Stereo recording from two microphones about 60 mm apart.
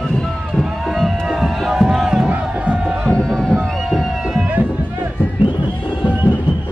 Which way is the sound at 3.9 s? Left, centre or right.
Centre.